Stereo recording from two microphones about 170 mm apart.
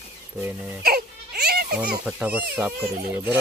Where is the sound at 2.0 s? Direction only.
10° right (ahead or behind).